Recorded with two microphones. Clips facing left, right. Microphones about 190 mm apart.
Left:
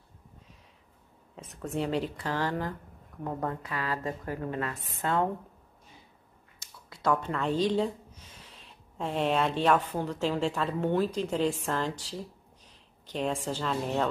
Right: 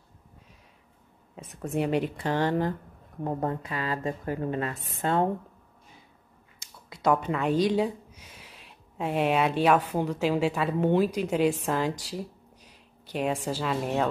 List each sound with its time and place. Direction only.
1.3 s a woman's voice: 15° right (ahead or behind)
6.9 s speech: 15° right (ahead or behind)
12.6 s a sound: 10° right (ahead or behind)
13.5 s speech: 10° right (ahead or behind)